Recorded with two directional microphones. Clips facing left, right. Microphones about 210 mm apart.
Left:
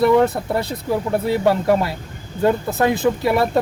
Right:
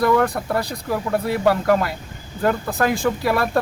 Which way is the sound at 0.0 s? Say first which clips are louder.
Left 3 dB; 20° left (ahead or behind).